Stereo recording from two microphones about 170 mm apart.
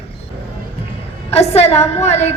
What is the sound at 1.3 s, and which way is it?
Speech, 40° left (ahead or behind).